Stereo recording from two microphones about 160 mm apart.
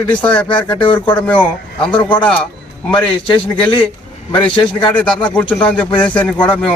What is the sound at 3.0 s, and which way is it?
Speech, 30° left (ahead or behind).